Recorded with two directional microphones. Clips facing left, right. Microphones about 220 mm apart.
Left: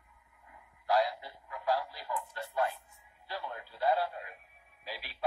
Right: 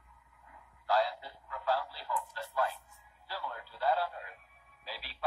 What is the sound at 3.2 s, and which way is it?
Radio, 20° left (ahead or behind).